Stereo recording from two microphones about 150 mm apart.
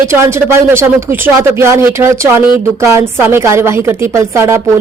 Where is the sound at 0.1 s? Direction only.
15° right (ahead or behind).